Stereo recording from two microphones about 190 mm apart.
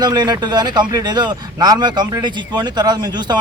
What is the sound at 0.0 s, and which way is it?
Speech, 20° right (ahead or behind).